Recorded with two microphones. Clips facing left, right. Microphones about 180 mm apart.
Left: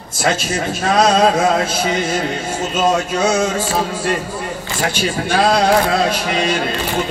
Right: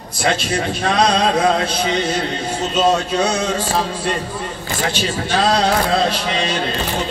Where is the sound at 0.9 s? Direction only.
45° left (ahead or behind).